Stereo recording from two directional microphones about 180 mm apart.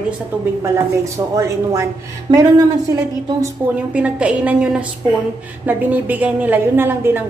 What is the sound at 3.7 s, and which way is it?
A woman's voice, 5° right (ahead or behind).